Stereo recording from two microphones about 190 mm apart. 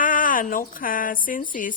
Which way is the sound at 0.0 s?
45° left (ahead or behind).